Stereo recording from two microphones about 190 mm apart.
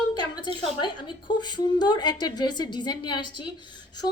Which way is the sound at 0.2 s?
20° left (ahead or behind).